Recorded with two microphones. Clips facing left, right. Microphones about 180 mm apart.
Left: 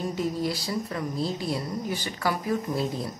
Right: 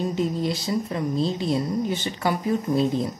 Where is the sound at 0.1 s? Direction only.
20° right (ahead or behind).